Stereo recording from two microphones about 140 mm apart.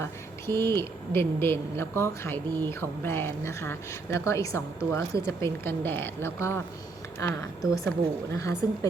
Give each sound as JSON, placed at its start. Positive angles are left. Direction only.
{"t": 0.0, "sound": "a woman's voice", "side_deg": 20}
{"t": 7.7, "sound": "a woman's voice", "side_deg": 20}